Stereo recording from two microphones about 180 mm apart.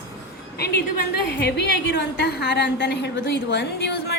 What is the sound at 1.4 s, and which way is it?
A woman's voice, 65° left (ahead or behind).